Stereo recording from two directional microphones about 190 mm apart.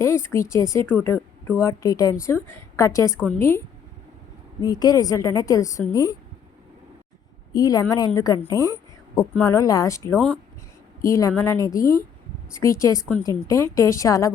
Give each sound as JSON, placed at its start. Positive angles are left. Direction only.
{"t": 0.0, "sound": "a woman's voice", "side_deg": 15}
{"t": 4.6, "sound": "a woman's voice", "side_deg": 20}
{"t": 7.5, "sound": "a woman's voice", "side_deg": 20}
{"t": 10.2, "sound": "speech", "side_deg": 5}
{"t": 11.0, "sound": "a woman's voice", "side_deg": 15}